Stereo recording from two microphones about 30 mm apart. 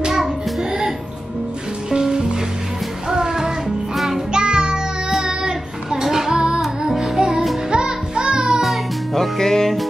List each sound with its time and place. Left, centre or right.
1.9 s music: centre
3.6 s music: centre
4.3 s music: right
5.4 s child singing: centre
7.2 s music: right
9.1 s music: centre